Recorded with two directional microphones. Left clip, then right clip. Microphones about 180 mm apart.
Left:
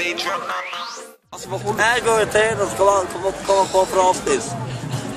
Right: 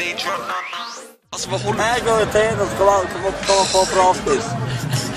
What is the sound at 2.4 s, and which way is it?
Speech, 20° left (ahead or behind).